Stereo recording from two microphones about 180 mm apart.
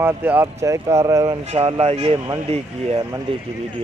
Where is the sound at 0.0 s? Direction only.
10° right (ahead or behind).